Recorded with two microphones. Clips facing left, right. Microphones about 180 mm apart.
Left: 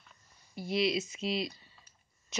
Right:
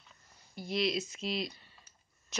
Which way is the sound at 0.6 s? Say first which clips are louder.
Left 2 dB; centre (ahead or behind).